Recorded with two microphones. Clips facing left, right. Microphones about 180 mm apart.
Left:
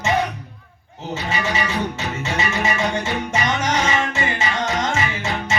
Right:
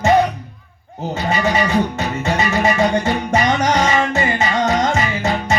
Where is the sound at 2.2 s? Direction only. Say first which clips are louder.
Right 5 dB; 55° right (ahead or behind).